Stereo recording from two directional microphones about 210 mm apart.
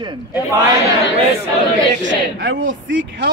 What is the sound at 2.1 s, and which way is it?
Battle cry, 55° right (ahead or behind).